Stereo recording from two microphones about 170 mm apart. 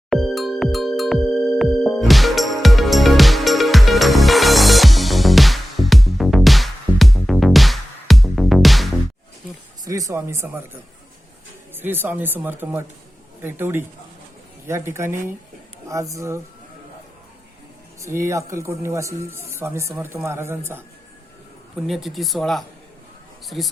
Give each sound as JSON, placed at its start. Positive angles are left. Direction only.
{"t": 0.1, "sound": "music", "side_deg": 0}
{"t": 9.8, "sound": "speech", "side_deg": -20}
{"t": 11.7, "sound": "speech", "side_deg": -10}
{"t": 18.0, "sound": "speech", "side_deg": -15}
{"t": 21.8, "sound": "speech", "side_deg": 0}